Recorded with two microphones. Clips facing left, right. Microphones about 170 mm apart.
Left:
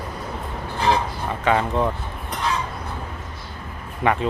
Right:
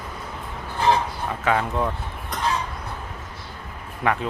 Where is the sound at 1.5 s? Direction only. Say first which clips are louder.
Left 3 dB; centre (ahead or behind).